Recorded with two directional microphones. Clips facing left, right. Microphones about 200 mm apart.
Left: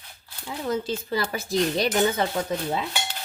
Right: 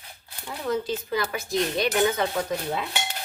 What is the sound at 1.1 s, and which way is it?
Speech, 35° left (ahead or behind).